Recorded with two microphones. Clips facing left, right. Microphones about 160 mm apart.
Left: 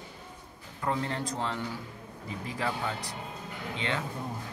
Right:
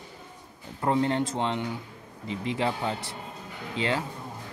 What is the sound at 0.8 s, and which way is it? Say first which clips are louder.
A man's voice: right 7 dB; 30° right (ahead or behind).